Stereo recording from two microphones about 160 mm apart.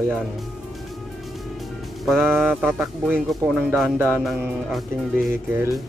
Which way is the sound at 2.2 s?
10° right (ahead or behind).